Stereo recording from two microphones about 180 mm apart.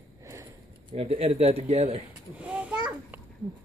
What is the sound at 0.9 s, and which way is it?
Speech, 35° right (ahead or behind).